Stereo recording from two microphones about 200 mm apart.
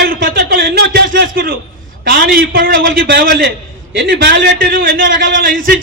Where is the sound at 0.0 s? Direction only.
50° right (ahead or behind).